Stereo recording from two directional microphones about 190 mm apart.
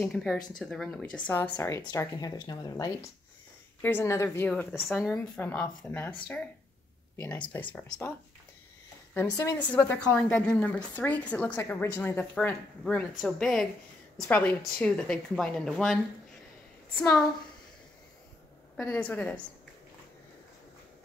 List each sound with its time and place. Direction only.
0.0 s a woman's voice: centre (ahead or behind)
9.1 s a woman's voice: 10° left (ahead or behind)
18.8 s a woman's voice: 5° left (ahead or behind)